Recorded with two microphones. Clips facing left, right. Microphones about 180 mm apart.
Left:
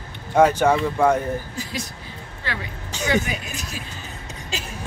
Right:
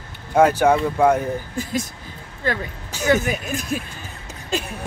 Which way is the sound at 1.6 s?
50° right (ahead or behind).